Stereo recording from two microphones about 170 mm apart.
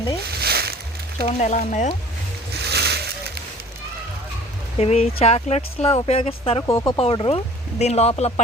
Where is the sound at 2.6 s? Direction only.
70° right (ahead or behind).